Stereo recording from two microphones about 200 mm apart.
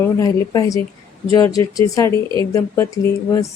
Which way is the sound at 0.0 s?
20° left (ahead or behind).